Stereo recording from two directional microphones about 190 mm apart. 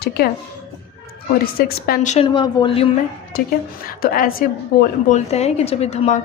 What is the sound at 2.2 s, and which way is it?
Speech, 25° left (ahead or behind).